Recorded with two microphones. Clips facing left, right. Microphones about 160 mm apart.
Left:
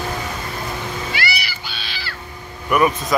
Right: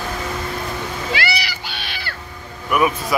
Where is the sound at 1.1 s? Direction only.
90° right; by 2.1 s 60° right (ahead or behind).